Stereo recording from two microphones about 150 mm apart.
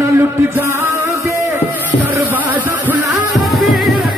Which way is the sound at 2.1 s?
15° right (ahead or behind).